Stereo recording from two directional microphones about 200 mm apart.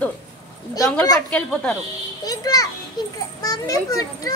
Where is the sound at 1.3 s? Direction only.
5° left (ahead or behind).